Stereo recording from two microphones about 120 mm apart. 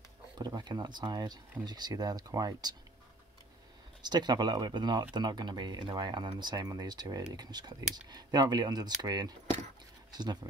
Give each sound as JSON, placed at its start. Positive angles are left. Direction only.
{"t": 0.4, "sound": "speech", "side_deg": -35}
{"t": 4.0, "sound": "speech", "side_deg": -35}